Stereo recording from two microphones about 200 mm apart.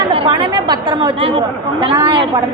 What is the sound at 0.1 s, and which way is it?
A woman's voice, 25° right (ahead or behind).